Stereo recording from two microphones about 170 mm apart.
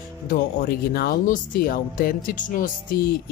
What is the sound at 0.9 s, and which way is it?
Speech, 60° left (ahead or behind).